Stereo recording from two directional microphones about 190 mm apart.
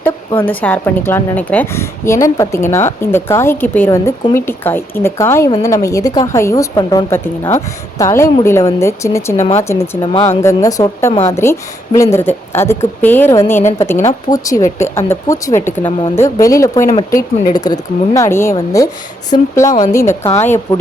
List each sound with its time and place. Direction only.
0.4 s speech: 10° left (ahead or behind)
10.0 s speech: 25° left (ahead or behind)
10.2 s speech: 15° left (ahead or behind)